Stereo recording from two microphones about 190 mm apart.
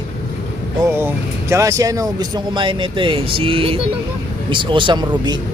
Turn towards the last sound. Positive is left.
turn(degrees=-25)  # may be behind; listen again after turning